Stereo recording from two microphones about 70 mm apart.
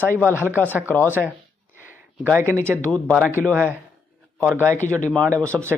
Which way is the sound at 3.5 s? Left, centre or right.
Right.